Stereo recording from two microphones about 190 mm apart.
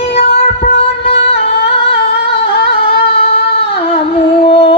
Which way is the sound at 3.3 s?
30° left (ahead or behind).